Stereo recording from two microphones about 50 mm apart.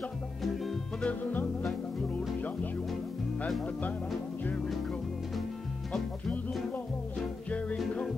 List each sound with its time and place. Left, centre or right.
1.0 s music: left